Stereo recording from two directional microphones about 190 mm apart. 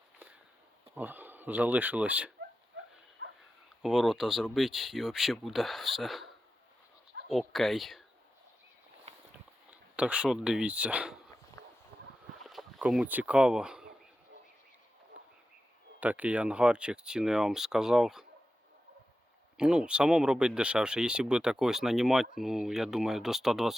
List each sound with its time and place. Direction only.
0.9 s speech: 10° right (ahead or behind)
3.2 s dog: 70° right (ahead or behind)
3.8 s speech: centre (ahead or behind)
7.3 s speech: centre (ahead or behind)
9.1 s a sound: 35° right (ahead or behind)
9.6 s speech: 5° right (ahead or behind)
11.6 s a sound: 15° left (ahead or behind)
11.9 s boat: 15° left (ahead or behind)
12.4 s a sound: centre (ahead or behind)
16.0 s speech: 10° right (ahead or behind)
19.5 s speech: 5° right (ahead or behind)